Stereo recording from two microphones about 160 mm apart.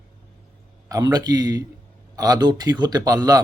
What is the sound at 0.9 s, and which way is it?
Speech, 25° right (ahead or behind).